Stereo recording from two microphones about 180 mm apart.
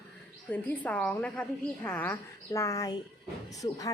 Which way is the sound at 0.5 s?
10° left (ahead or behind).